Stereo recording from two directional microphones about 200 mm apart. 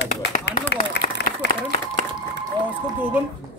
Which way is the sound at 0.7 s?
55° left (ahead or behind).